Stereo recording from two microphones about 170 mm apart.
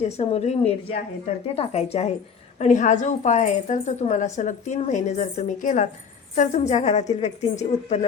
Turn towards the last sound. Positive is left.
turn(degrees=40)  # may be behind; listen again after turning